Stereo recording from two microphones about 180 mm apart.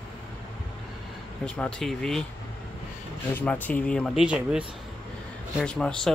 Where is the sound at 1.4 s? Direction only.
5° left (ahead or behind).